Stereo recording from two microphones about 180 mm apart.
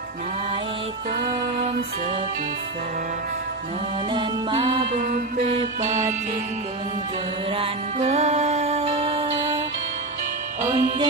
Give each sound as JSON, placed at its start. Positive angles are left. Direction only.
{"t": 4.1, "sound": "music", "side_deg": -25}
{"t": 4.9, "sound": "mantra", "side_deg": -45}
{"t": 7.5, "sound": "music", "side_deg": -35}
{"t": 10.6, "sound": "music", "side_deg": -15}